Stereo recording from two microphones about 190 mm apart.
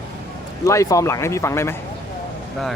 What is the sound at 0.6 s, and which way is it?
Speech, 15° left (ahead or behind).